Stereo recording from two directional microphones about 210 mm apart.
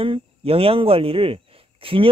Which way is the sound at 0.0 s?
25° right (ahead or behind).